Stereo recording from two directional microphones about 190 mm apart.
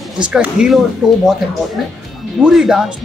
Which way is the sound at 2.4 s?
5° right (ahead or behind).